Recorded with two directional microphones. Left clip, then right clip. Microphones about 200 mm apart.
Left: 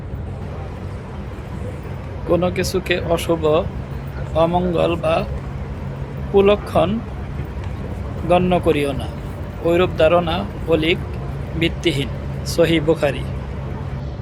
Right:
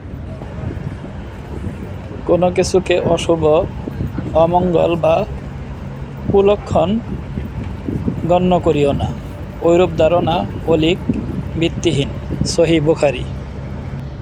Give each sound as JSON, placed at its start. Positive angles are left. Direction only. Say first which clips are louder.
{"t": 2.3, "sound": "speech", "louder": "right 5 dB", "side_deg": -25}
{"t": 6.3, "sound": "speech", "louder": "right 2 dB", "side_deg": -20}
{"t": 8.3, "sound": "speech", "louder": "right 2 dB", "side_deg": -20}